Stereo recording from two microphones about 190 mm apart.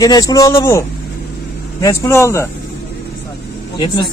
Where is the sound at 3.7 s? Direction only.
25° left (ahead or behind).